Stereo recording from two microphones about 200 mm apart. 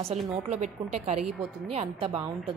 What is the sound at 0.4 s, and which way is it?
A woman's voice, 30° right (ahead or behind).